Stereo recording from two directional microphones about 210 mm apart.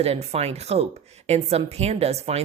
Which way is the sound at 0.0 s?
30° right (ahead or behind).